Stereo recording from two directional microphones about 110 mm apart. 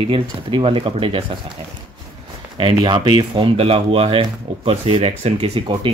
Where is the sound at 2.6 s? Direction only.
45° right (ahead or behind); by 5.6 s 65° right (ahead or behind).